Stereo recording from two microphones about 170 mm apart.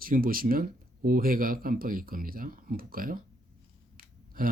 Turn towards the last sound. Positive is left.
turn(degrees=-55)  # may be behind; listen again after turning